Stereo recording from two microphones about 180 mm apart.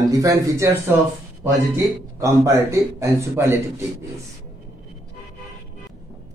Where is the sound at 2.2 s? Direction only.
15° right (ahead or behind).